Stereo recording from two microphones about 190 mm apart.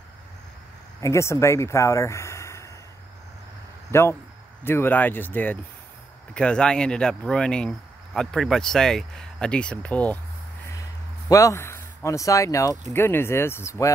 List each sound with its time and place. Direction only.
1.0 s speech: 15° left (ahead or behind)
3.9 s speech: 15° left (ahead or behind)
10.7 s a sound: 15° left (ahead or behind)
12.9 s speech: 10° left (ahead or behind)